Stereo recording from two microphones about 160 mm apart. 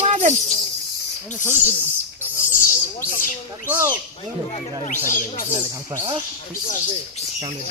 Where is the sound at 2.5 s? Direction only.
55° left (ahead or behind).